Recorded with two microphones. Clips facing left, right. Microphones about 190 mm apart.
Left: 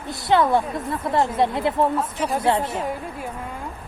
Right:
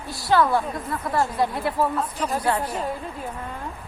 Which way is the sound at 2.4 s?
25° left (ahead or behind).